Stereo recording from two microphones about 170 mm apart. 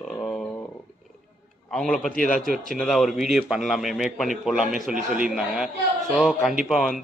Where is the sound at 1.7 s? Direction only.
5° left (ahead or behind).